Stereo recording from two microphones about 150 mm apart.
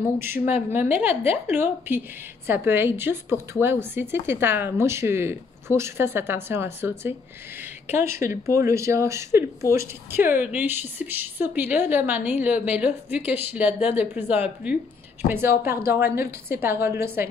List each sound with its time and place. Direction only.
0.2 s speech: 15° right (ahead or behind)